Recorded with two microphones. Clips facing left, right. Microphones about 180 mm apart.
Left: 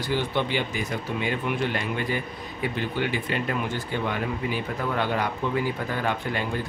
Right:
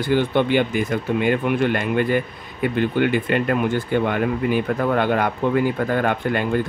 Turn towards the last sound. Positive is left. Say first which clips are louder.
# right 8 dB
turn(degrees=-55)  # may be behind; listen again after turning